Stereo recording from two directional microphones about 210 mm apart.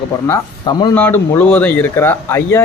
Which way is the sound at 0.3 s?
20° left (ahead or behind).